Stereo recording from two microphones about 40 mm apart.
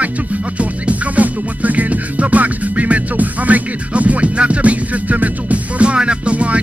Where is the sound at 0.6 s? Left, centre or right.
Right.